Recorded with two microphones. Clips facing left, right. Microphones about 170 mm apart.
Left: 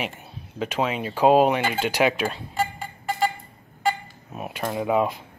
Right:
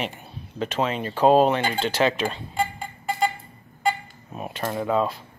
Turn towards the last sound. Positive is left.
turn(degrees=15)  # may be behind; listen again after turning